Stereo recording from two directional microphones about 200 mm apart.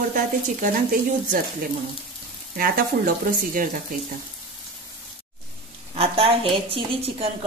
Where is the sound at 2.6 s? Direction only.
45° right (ahead or behind).